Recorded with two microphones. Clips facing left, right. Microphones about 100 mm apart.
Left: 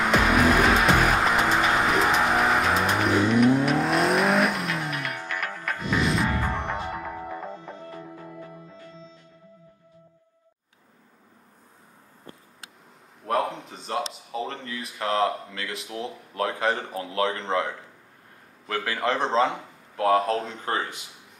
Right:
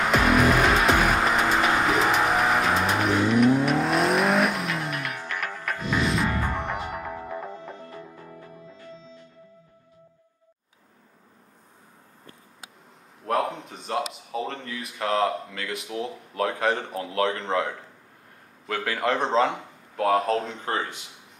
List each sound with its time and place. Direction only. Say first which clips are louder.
0.0 s music: even; centre (ahead or behind)
6.5 s music: even; 10° right (ahead or behind)
7.9 s music: left 2 dB; 15° left (ahead or behind)
13.2 s a sound: even; centre (ahead or behind)
18.7 s speech: right 1 dB; centre (ahead or behind)